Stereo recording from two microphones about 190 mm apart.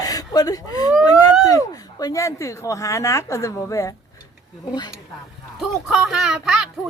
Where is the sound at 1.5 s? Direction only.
20° left (ahead or behind).